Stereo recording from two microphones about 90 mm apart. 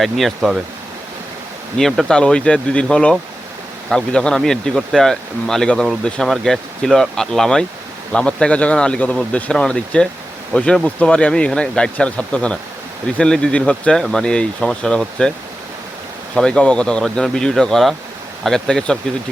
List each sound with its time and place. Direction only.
0.0 s speech: centre (ahead or behind)
1.8 s speech: 5° left (ahead or behind)
16.3 s speech: 10° left (ahead or behind)